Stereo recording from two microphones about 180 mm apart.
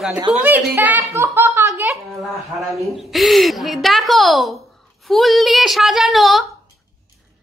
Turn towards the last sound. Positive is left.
turn(degrees=0)  # may be behind; listen again after turning